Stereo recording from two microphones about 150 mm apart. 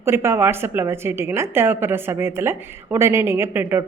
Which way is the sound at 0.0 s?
15° right (ahead or behind).